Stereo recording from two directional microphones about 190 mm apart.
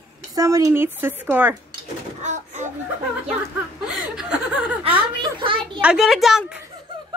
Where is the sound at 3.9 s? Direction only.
5° right (ahead or behind).